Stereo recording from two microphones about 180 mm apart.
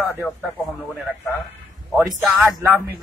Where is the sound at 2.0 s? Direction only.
10° right (ahead or behind).